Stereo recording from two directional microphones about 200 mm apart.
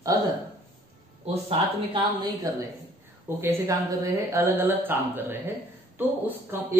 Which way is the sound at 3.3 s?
15° right (ahead or behind).